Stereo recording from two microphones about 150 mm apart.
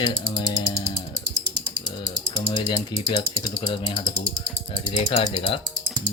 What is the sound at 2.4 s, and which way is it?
Ratchet, 35° left (ahead or behind).